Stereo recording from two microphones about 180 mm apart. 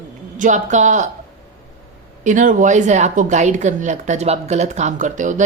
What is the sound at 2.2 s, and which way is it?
Speech, 45° right (ahead or behind).